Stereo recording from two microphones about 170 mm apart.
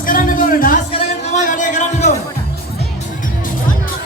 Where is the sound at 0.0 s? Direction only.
55° left (ahead or behind).